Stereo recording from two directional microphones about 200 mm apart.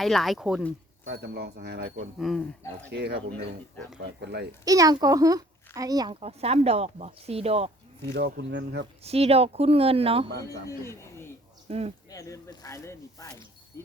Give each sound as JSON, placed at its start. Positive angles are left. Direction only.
{"t": 0.0, "sound": "speech", "side_deg": 0}
{"t": 1.0, "sound": "speech", "side_deg": -55}
{"t": 2.1, "sound": "speech", "side_deg": 0}
{"t": 2.9, "sound": "speech", "side_deg": -55}
{"t": 4.6, "sound": "speech", "side_deg": -15}
{"t": 8.1, "sound": "speech", "side_deg": -60}
{"t": 9.0, "sound": "speech", "side_deg": -30}
{"t": 10.4, "sound": "speech", "side_deg": 15}
{"t": 11.7, "sound": "speech", "side_deg": -30}
{"t": 12.1, "sound": "speech", "side_deg": 15}
{"t": 13.7, "sound": "dog", "side_deg": 15}